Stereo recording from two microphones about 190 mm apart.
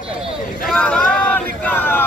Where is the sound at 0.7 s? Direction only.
5° left (ahead or behind).